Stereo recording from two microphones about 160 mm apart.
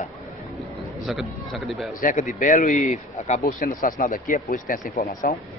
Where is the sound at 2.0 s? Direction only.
55° left (ahead or behind).